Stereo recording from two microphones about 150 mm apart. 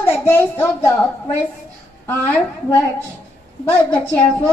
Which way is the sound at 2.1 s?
15° left (ahead or behind).